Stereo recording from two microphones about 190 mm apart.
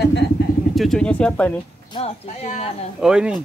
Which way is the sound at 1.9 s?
25° left (ahead or behind).